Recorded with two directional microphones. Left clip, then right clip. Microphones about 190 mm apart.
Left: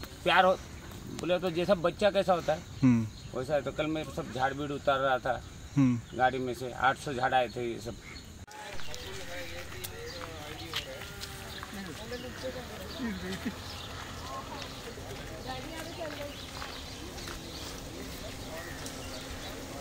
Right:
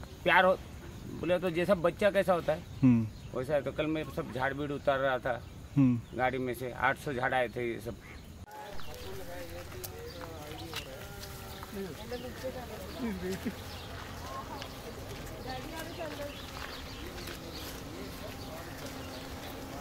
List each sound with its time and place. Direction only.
0.2 s speech: 5° right (ahead or behind)